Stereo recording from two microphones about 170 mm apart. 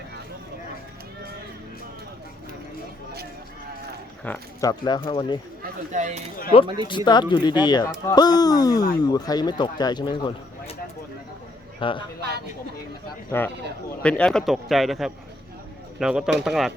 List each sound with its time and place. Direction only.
4.3 s speech: 10° left (ahead or behind)
4.6 s speech: 25° left (ahead or behind)
5.9 s speech: 45° right (ahead or behind)
6.8 s speech: 30° left (ahead or behind)
11.8 s speech: 30° left (ahead or behind)
13.3 s a man's voice: 15° left (ahead or behind); by 16.7 s centre (ahead or behind)